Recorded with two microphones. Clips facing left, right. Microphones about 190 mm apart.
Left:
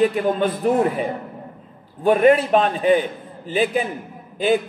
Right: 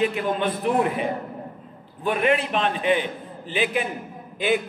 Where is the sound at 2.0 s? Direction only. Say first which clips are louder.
Left 7 dB; 45° left (ahead or behind).